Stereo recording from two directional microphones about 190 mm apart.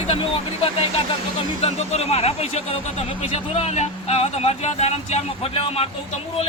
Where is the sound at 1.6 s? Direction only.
35° left (ahead or behind).